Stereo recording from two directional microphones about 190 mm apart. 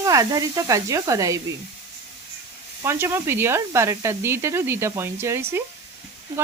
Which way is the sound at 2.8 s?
15° right (ahead or behind).